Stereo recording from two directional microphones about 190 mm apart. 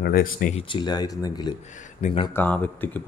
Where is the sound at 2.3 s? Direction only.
10° left (ahead or behind).